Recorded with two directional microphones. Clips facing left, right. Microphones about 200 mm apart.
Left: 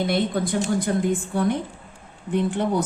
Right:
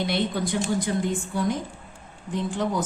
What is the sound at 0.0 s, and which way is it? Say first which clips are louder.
A woman's voice: left 3 dB; 55° left (ahead or behind).